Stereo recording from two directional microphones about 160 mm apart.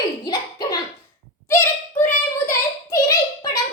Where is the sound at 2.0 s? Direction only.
20° left (ahead or behind).